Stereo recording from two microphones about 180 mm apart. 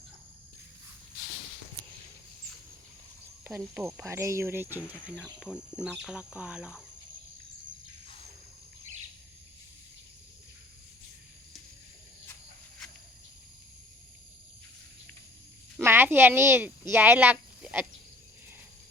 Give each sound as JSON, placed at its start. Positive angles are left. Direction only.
{"t": 3.4, "sound": "speech", "side_deg": -10}
{"t": 15.8, "sound": "speech", "side_deg": -10}